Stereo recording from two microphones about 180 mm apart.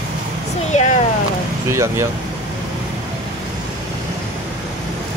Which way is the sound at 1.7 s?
15° right (ahead or behind).